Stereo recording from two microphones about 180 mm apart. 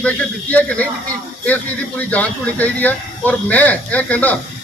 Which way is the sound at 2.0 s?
10° left (ahead or behind).